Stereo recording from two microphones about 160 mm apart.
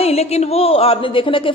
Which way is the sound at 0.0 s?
40° left (ahead or behind).